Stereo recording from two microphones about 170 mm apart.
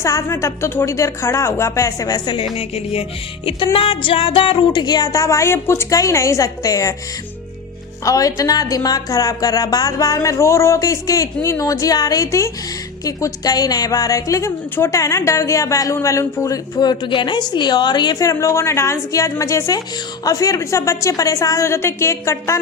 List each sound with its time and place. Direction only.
0.0 s a woman's voice: 15° left (ahead or behind)
8.0 s a woman's voice: 20° left (ahead or behind)